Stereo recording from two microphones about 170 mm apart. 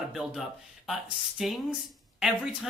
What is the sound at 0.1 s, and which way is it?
Speech, centre (ahead or behind).